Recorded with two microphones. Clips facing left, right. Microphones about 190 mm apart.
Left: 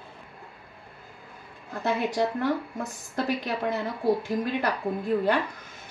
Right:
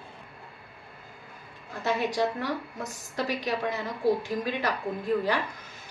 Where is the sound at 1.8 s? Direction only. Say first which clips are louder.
Left 1 dB; 50° left (ahead or behind).